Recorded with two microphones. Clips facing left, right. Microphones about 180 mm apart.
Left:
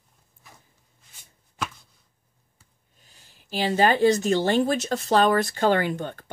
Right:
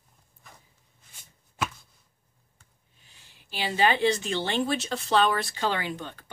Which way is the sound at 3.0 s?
40° left (ahead or behind).